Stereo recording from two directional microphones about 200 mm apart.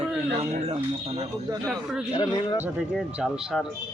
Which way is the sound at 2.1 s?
25° left (ahead or behind).